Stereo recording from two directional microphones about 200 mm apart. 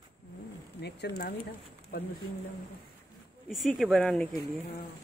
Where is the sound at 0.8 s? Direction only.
55° left (ahead or behind).